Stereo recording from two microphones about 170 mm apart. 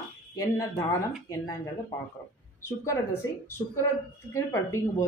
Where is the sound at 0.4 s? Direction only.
20° left (ahead or behind).